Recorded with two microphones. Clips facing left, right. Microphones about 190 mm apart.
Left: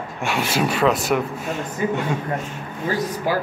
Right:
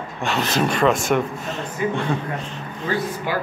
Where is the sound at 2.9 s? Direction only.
35° left (ahead or behind).